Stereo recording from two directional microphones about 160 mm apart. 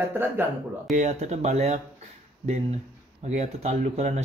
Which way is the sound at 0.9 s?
50° right (ahead or behind).